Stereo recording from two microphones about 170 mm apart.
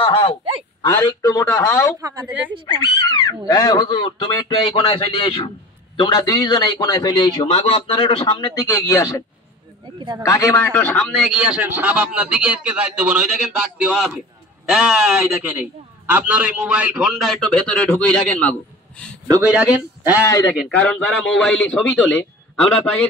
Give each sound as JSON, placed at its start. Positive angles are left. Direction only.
{"t": 0.0, "sound": "a sound", "side_deg": 35}
{"t": 1.2, "sound": "a man's voice", "side_deg": 20}
{"t": 2.0, "sound": "a man's voice", "side_deg": -20}
{"t": 2.2, "sound": "speech", "side_deg": -10}
{"t": 2.6, "sound": "a man's voice", "side_deg": 25}
{"t": 8.7, "sound": "speech", "side_deg": 15}
{"t": 9.9, "sound": "a man's voice", "side_deg": -25}
{"t": 10.2, "sound": "a man's voice", "side_deg": 15}
{"t": 19.4, "sound": "speech", "side_deg": -5}
{"t": 20.5, "sound": "a man's voice", "side_deg": 5}